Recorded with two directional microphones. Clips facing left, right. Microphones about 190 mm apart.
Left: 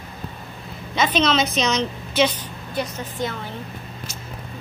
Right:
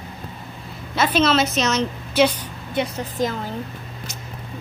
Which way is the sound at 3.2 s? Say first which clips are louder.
Right 4 dB; 90° right.